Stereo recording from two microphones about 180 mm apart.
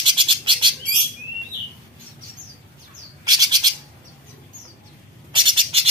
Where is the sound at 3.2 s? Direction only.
20° right (ahead or behind).